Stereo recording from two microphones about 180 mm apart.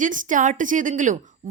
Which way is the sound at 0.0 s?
45° right (ahead or behind).